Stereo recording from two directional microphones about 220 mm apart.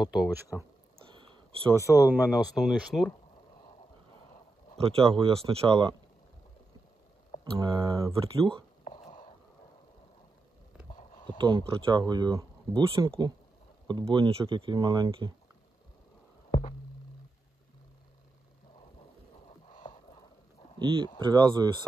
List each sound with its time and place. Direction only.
0.0 s speech: 5° right (ahead or behind)
1.1 s a sound: 25° right (ahead or behind)
2.0 s speech: 10° right (ahead or behind)
4.7 s speech: 25° right (ahead or behind)
7.5 s speech: 15° right (ahead or behind)
9.0 s a sound: 30° left (ahead or behind)
11.3 s speech: 20° right (ahead or behind)
16.4 s a sound: 30° left (ahead or behind)
21.2 s speech: 20° right (ahead or behind)